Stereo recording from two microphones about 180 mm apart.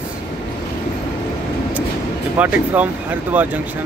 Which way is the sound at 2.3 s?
10° right (ahead or behind).